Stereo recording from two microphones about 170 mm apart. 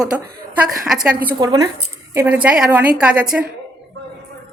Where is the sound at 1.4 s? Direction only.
20° right (ahead or behind).